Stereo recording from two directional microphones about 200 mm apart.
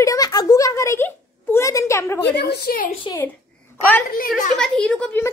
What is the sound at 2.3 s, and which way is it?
Speech, 50° left (ahead or behind).